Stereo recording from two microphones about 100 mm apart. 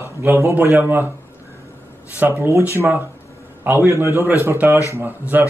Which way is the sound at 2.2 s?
25° right (ahead or behind).